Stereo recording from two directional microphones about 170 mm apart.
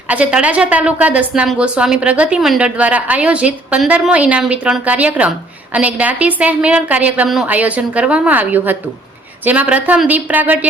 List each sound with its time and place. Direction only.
0.1 s a woman's voice: 5° right (ahead or behind)